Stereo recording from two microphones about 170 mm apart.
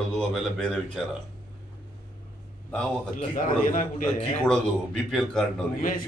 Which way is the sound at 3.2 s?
50° left (ahead or behind).